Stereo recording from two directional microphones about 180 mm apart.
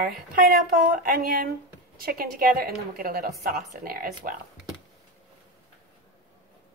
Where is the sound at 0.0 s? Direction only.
55° right (ahead or behind).